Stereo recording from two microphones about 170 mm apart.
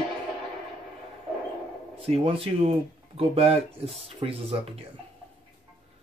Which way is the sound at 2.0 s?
35° right (ahead or behind).